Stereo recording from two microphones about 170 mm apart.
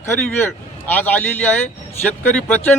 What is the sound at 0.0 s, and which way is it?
Speech, 15° left (ahead or behind).